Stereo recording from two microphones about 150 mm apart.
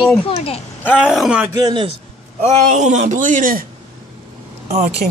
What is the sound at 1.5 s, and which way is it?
Speech, 30° right (ahead or behind).